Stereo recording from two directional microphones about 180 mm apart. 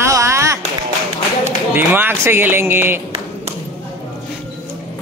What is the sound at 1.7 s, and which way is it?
Speech, 10° right (ahead or behind).